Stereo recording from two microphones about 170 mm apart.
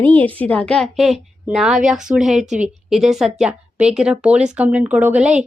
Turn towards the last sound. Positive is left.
turn(degrees=-5)  # may be behind; listen again after turning